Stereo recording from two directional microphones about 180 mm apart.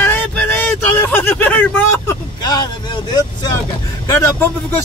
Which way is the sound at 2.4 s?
20° left (ahead or behind).